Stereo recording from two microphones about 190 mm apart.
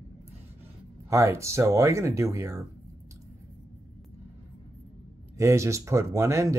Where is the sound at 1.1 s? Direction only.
15° right (ahead or behind).